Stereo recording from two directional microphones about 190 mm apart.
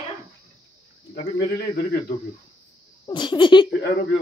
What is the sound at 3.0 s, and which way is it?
Speech, 25° left (ahead or behind).